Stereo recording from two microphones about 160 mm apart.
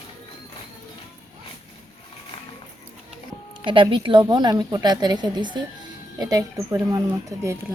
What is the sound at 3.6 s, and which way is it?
Speech, 30° right (ahead or behind).